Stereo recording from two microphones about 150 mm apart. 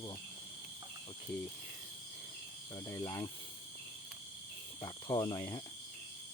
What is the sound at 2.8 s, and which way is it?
Speech, 25° left (ahead or behind).